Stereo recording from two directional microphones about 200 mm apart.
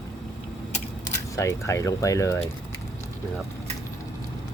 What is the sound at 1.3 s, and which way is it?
Speech, 15° left (ahead or behind).